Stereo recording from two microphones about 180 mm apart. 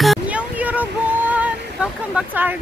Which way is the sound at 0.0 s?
5° right (ahead or behind).